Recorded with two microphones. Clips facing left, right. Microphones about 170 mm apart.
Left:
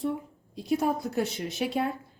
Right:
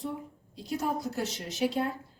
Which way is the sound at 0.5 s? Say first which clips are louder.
Left 5 dB; 55° left (ahead or behind).